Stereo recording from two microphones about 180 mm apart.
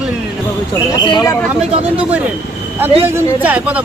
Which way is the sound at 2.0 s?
10° right (ahead or behind).